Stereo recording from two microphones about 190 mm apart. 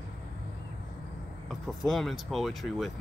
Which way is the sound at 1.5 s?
Centre (ahead or behind).